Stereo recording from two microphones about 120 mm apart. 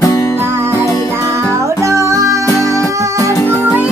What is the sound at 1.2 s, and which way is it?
Music, 25° right (ahead or behind).